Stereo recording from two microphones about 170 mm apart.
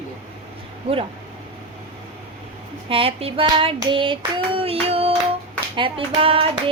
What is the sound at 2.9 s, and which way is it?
Child singing, 35° right (ahead or behind).